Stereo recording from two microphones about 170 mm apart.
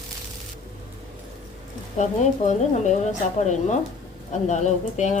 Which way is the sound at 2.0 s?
45° left (ahead or behind).